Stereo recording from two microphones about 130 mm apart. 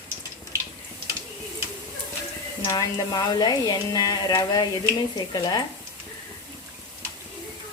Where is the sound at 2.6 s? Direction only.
30° left (ahead or behind).